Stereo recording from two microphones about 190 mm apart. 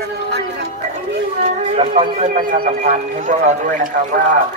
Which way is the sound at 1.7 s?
35° right (ahead or behind).